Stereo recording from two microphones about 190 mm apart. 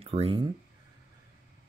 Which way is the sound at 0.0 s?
30° right (ahead or behind).